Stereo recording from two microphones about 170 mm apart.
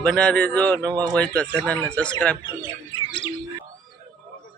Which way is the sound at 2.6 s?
30° left (ahead or behind).